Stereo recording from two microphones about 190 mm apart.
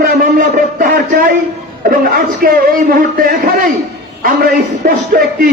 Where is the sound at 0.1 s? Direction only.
45° right (ahead or behind).